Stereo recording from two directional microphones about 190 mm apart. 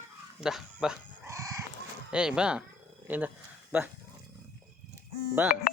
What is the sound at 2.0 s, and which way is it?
Speech, 5° right (ahead or behind).